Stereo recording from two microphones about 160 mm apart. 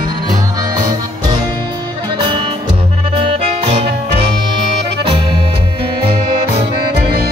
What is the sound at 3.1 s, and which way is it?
Music, 35° right (ahead or behind).